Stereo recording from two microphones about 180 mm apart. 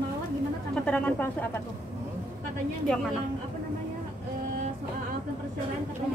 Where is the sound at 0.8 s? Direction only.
5° left (ahead or behind).